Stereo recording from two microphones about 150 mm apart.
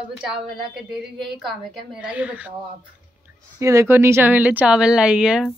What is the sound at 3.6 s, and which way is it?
A woman's voice, 20° right (ahead or behind).